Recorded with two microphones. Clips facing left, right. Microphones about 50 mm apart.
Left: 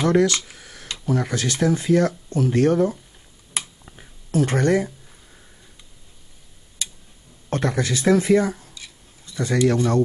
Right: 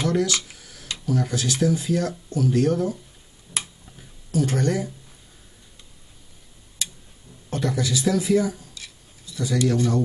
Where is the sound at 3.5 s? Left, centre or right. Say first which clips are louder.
Left 1 dB; centre.